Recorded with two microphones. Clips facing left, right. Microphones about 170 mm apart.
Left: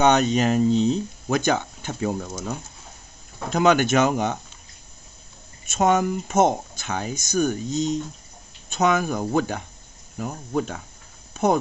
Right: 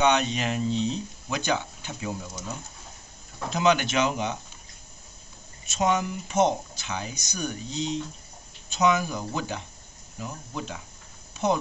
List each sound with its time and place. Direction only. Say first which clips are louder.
0.0 s speech: left 5 dB; 45° left (ahead or behind)
5.7 s speech: left 5 dB; 50° left (ahead or behind)